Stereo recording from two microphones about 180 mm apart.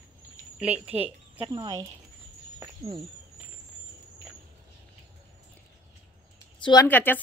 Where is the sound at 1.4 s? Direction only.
25° right (ahead or behind).